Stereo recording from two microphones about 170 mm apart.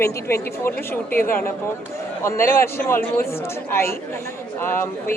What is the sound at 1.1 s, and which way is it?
Speech, 55° left (ahead or behind).